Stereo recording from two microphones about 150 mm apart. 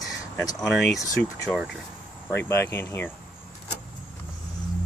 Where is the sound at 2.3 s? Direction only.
15° left (ahead or behind).